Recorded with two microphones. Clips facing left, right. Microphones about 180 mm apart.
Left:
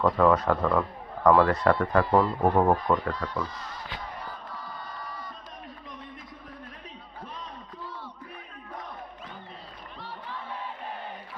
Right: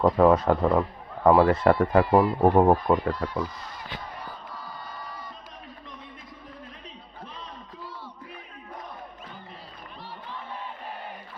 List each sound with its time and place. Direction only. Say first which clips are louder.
0.0 s a man's voice: right 3 dB; 25° right (ahead or behind)
1.3 s speech: right 2 dB; 10° right (ahead or behind)
1.5 s speech: right 3 dB; 25° right (ahead or behind); by 3.4 s 10° right (ahead or behind)